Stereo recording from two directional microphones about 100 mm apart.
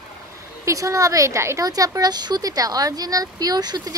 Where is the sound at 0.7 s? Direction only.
35° right (ahead or behind).